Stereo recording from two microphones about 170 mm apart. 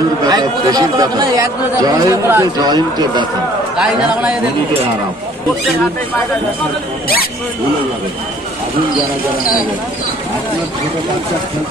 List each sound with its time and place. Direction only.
0.3 s speech: 20° right (ahead or behind)
3.7 s a man's voice: 5° right (ahead or behind)